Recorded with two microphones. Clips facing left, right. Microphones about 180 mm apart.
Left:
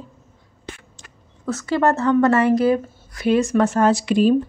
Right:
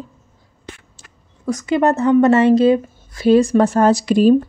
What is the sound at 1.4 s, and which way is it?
A woman's voice, 15° right (ahead or behind).